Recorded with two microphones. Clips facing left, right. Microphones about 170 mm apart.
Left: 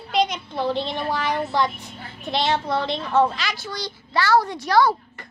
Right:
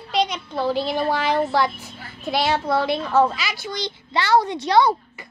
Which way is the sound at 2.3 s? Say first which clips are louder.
Right 2 dB; 5° right (ahead or behind).